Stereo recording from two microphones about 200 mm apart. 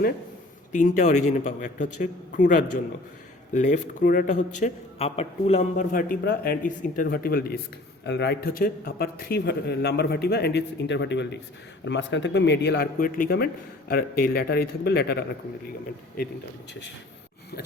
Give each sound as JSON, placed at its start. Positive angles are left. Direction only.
{"t": 0.7, "sound": "a man's voice", "side_deg": 40}